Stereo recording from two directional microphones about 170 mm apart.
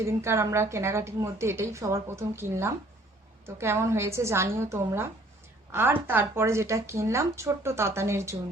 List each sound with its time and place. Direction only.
0.0 s a woman's voice: 15° right (ahead or behind)